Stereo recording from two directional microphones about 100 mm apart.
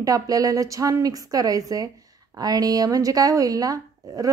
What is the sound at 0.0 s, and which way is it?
A woman's voice, 35° right (ahead or behind).